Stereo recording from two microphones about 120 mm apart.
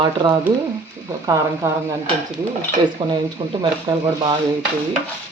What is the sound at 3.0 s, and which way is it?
Speech, 40° right (ahead or behind).